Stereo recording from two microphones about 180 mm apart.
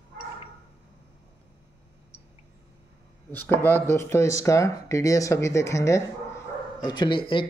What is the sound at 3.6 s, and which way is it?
Speech, 15° left (ahead or behind).